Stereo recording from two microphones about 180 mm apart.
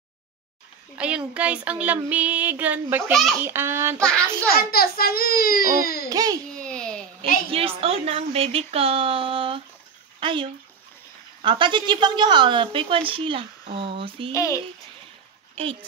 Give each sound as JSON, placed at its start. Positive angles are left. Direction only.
{"t": 0.9, "sound": "speech", "side_deg": -5}
{"t": 3.1, "sound": "a child's voice", "side_deg": 0}
{"t": 3.4, "sound": "speech", "side_deg": -15}
{"t": 4.0, "sound": "a child's voice", "side_deg": 5}
{"t": 4.6, "sound": "a child's voice", "side_deg": 55}
{"t": 6.0, "sound": "a woman's voice", "side_deg": -20}
{"t": 6.6, "sound": "a sound", "side_deg": 5}
{"t": 7.5, "sound": "a woman's voice", "side_deg": -35}
{"t": 14.3, "sound": "speech", "side_deg": 15}